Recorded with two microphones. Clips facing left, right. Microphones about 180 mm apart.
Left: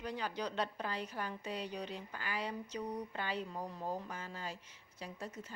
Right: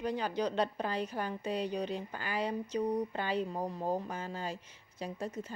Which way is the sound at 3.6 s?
40° right (ahead or behind).